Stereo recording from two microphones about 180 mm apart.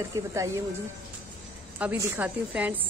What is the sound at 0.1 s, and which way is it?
Speech, 15° right (ahead or behind).